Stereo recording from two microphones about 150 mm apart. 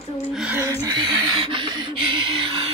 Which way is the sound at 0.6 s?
20° right (ahead or behind).